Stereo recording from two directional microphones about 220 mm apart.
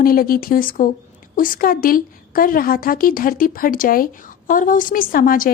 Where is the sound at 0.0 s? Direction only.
40° left (ahead or behind).